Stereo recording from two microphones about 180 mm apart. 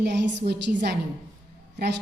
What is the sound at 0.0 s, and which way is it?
Speech, 70° right (ahead or behind).